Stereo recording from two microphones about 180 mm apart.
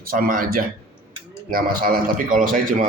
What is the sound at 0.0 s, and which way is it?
A man's voice, 50° right (ahead or behind).